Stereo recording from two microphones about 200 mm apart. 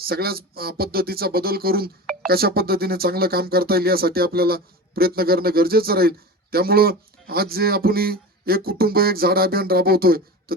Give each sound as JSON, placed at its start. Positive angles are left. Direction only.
{"t": 0.0, "sound": "speech", "side_deg": -50}